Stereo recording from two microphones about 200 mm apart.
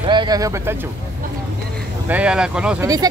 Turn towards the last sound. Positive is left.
turn(degrees=-20)  # may be behind; listen again after turning